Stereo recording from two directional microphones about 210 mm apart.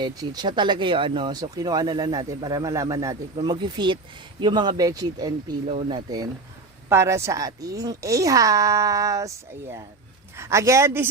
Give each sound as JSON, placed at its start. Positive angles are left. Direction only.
{"t": 0.0, "sound": "speech", "side_deg": -20}